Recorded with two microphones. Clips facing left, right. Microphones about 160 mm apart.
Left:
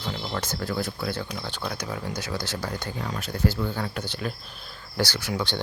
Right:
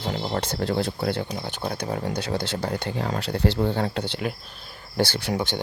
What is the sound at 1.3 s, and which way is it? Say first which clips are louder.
Speech: right 3 dB; 15° right (ahead or behind).